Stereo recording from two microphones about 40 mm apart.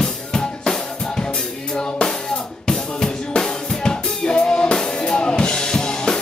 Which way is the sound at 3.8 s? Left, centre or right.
Left.